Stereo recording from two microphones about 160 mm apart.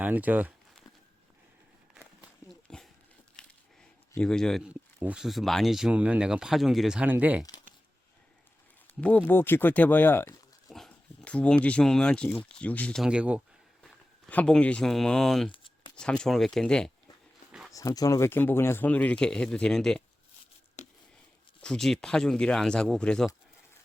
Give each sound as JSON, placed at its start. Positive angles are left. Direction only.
{"t": 0.0, "sound": "speech", "side_deg": -10}
{"t": 2.5, "sound": "a sound", "side_deg": 0}
{"t": 4.2, "sound": "speech", "side_deg": 5}
{"t": 9.0, "sound": "speech", "side_deg": 10}
{"t": 10.7, "sound": "speech", "side_deg": 0}
{"t": 13.1, "sound": "speech", "side_deg": -5}
{"t": 13.8, "sound": "speech", "side_deg": 5}
{"t": 17.7, "sound": "speech", "side_deg": 20}
{"t": 20.8, "sound": "a sound", "side_deg": 45}
{"t": 21.6, "sound": "speech", "side_deg": 5}